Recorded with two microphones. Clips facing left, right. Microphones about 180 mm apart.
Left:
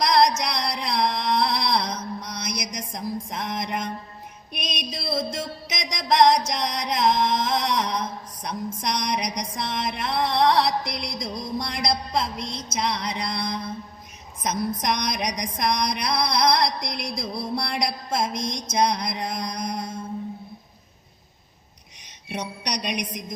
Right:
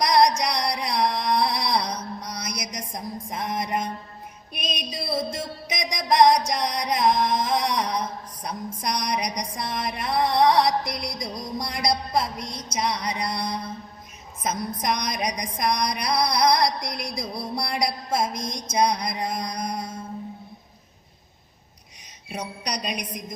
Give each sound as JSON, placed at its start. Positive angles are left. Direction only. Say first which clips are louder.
{"t": 0.0, "sound": "music", "louder": "even", "side_deg": -10}
{"t": 0.3, "sound": "a sound", "louder": "right 2 dB", "side_deg": -10}
{"t": 4.8, "sound": "music", "louder": "left 1 dB", "side_deg": -10}
{"t": 22.3, "sound": "a woman's voice", "louder": "left 1 dB", "side_deg": -5}